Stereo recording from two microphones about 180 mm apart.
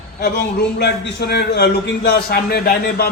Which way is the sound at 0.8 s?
65° left (ahead or behind).